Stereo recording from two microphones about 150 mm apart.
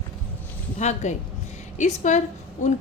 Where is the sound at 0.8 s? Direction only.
50° left (ahead or behind).